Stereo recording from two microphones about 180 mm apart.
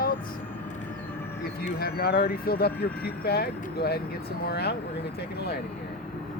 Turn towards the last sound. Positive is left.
turn(degrees=65)  # may be behind; listen again after turning